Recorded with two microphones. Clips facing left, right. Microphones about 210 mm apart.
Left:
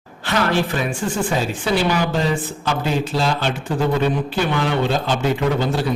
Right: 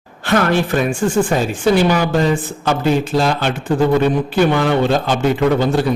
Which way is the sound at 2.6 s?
50° right (ahead or behind).